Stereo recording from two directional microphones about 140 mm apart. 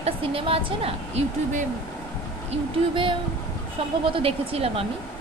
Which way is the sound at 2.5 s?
40° right (ahead or behind).